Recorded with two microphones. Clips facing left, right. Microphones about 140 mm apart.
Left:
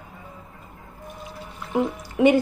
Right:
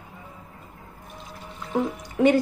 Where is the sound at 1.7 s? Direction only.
5° left (ahead or behind).